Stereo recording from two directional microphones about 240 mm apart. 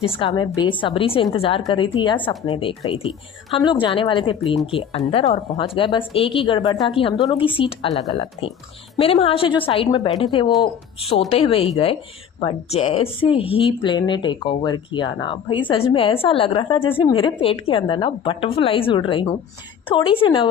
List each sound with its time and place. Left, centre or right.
0.2 s speech: centre